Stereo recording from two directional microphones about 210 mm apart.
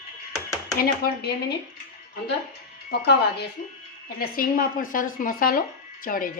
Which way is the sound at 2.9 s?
50° left (ahead or behind).